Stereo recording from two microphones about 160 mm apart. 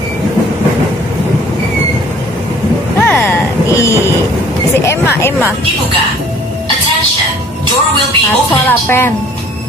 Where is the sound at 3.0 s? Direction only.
10° left (ahead or behind).